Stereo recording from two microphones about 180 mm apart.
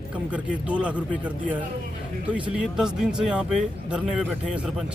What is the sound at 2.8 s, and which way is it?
Speech, 5° right (ahead or behind).